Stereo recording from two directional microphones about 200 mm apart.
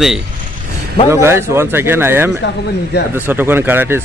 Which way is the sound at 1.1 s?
10° right (ahead or behind).